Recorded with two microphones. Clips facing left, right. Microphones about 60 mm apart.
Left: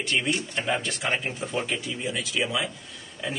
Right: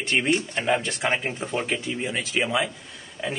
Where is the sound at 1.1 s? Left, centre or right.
Right.